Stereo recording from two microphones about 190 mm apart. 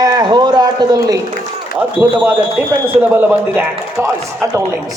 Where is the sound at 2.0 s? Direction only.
5° right (ahead or behind).